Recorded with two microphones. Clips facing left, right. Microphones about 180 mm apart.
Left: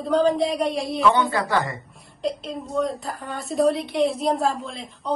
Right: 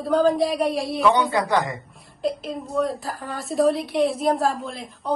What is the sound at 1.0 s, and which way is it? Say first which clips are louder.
Speech: right 1 dB; 15° right (ahead or behind).